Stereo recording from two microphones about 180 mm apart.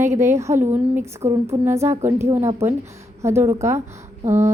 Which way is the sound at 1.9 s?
35° right (ahead or behind).